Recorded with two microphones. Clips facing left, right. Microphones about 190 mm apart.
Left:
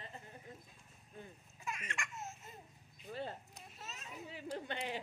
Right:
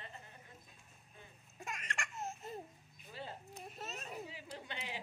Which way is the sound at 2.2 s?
35° right (ahead or behind).